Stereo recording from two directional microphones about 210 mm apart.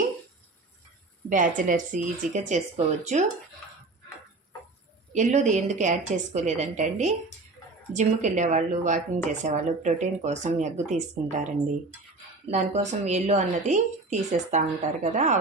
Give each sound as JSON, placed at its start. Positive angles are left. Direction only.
{"t": 1.3, "sound": "a woman's voice", "side_deg": -40}
{"t": 5.1, "sound": "a woman's voice", "side_deg": -35}
{"t": 12.5, "sound": "a woman's voice", "side_deg": -35}